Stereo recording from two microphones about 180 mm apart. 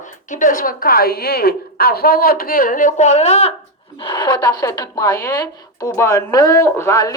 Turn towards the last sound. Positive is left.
turn(degrees=15)  # may be behind; listen again after turning